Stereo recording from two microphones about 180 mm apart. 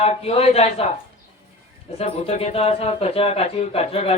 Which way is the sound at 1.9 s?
35° left (ahead or behind).